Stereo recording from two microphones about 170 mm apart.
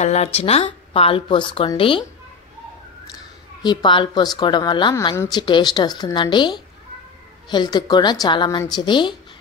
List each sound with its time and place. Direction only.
0.0 s speech: 40° left (ahead or behind)
3.6 s speech: 30° left (ahead or behind)
5.1 s speech: 15° left (ahead or behind)
5.4 s speech: 25° left (ahead or behind)